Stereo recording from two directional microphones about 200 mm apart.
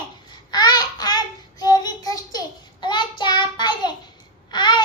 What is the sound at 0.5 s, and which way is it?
Child singing, 20° left (ahead or behind).